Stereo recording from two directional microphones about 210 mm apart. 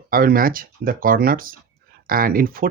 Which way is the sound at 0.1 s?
45° right (ahead or behind).